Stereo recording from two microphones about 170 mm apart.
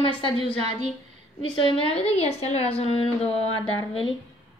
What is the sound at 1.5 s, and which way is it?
A woman's voice, 30° left (ahead or behind).